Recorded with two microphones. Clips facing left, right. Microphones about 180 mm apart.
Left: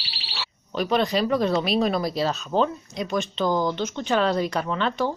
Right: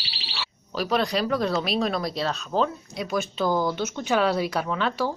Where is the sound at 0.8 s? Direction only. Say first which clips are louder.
Left 2 dB; centre (ahead or behind).